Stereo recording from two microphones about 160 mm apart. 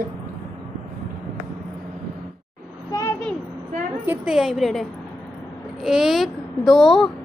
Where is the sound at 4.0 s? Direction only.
10° right (ahead or behind).